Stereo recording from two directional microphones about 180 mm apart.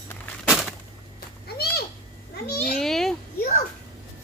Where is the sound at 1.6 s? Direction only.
60° left (ahead or behind).